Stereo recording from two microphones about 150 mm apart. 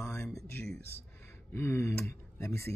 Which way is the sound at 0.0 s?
20° left (ahead or behind).